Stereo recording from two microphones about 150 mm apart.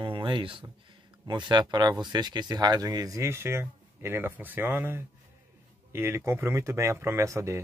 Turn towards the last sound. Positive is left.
turn(degrees=-20)  # may be behind; listen again after turning